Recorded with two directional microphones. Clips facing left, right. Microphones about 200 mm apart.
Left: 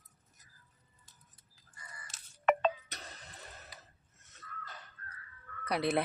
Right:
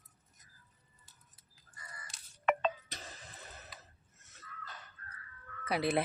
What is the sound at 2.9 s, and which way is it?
Music, 5° right (ahead or behind).